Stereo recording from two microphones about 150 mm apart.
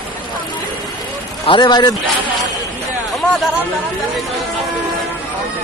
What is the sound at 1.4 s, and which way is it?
Speech, 30° left (ahead or behind).